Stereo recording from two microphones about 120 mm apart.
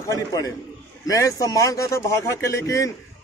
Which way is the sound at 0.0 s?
30° left (ahead or behind).